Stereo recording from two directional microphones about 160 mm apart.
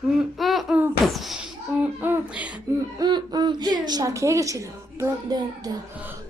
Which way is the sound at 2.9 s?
25° right (ahead or behind).